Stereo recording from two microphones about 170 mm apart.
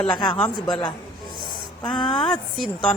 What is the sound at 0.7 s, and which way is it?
Speech, 25° left (ahead or behind).